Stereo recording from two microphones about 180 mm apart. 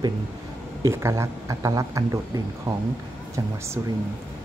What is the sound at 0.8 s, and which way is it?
Speech, 15° right (ahead or behind).